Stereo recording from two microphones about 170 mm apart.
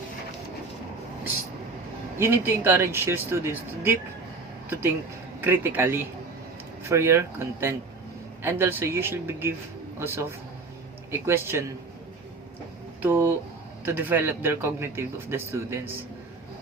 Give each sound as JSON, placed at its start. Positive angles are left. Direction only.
{"t": 2.1, "sound": "a man's voice", "side_deg": -15}
{"t": 5.4, "sound": "a man's voice", "side_deg": -10}
{"t": 13.0, "sound": "a man's voice", "side_deg": -10}